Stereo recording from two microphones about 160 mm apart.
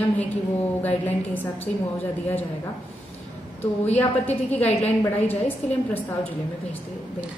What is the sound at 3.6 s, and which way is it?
Speech, 45° left (ahead or behind).